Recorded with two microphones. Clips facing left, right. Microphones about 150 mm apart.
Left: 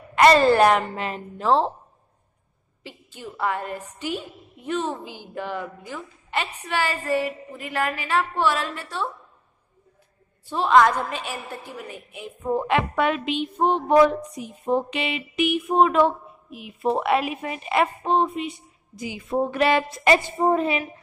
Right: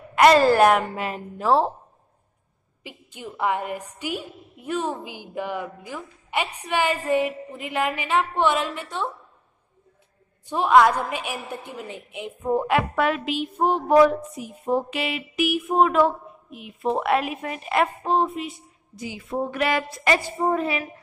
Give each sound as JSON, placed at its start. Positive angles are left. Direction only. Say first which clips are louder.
{"t": 0.1, "sound": "a woman's voice", "louder": "even", "side_deg": -5}
{"t": 2.8, "sound": "a woman's voice", "louder": "right 1 dB", "side_deg": -15}
{"t": 10.4, "sound": "a woman's voice", "louder": "right 1 dB", "side_deg": -15}
{"t": 12.4, "sound": "a woman's voice", "louder": "right 1 dB", "side_deg": -10}
{"t": 18.9, "sound": "speech", "louder": "left 1 dB", "side_deg": 15}
{"t": 19.3, "sound": "a woman's voice", "louder": "left 3 dB", "side_deg": 30}